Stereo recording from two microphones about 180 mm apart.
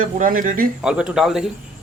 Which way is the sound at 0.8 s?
5° right (ahead or behind).